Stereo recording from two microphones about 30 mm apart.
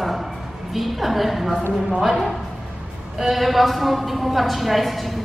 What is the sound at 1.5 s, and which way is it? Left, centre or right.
Speech, right.